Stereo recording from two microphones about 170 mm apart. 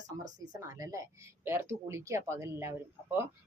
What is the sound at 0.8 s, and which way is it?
Speech, 20° right (ahead or behind).